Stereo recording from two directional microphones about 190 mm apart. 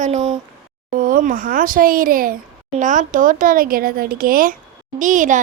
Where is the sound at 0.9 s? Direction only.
45° right (ahead or behind).